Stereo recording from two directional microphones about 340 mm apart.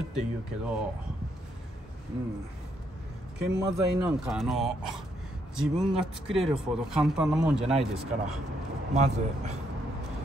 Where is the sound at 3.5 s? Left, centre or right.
Centre.